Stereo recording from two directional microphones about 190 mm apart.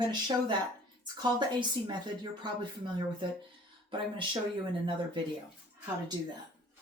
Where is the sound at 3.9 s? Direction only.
25° right (ahead or behind).